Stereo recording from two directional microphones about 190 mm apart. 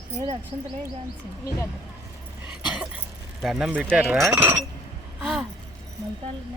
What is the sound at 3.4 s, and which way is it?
Speech, centre (ahead or behind).